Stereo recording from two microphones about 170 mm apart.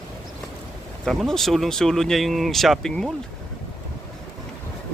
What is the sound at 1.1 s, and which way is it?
Speech, centre (ahead or behind).